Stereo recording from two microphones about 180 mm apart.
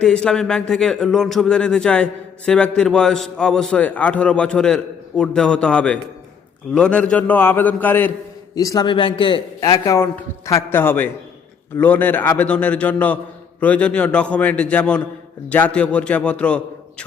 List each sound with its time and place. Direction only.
0.0 s a man's voice: 5° left (ahead or behind)
8.5 s a man's voice: 20° left (ahead or behind)